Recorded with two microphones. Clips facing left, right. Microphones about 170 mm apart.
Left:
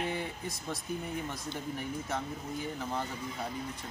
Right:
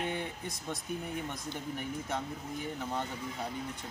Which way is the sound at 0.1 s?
5° left (ahead or behind).